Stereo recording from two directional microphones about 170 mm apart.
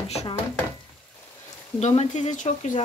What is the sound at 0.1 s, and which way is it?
Speech, 40° left (ahead or behind).